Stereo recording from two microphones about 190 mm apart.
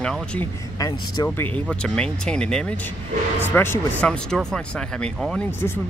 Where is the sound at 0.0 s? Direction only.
5° left (ahead or behind).